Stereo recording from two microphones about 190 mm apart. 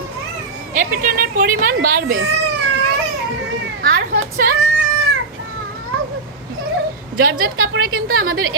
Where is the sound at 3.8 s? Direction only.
50° right (ahead or behind).